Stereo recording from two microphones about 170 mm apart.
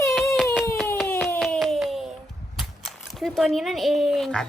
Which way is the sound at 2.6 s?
Centre (ahead or behind).